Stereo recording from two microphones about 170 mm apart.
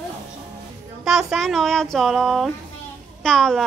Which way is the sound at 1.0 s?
Centre (ahead or behind).